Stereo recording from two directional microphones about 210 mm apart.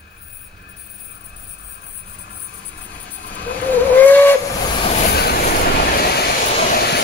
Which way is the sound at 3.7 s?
10° left (ahead or behind).